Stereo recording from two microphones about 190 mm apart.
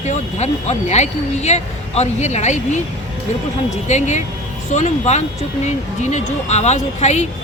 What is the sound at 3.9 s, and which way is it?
Speech, 35° left (ahead or behind).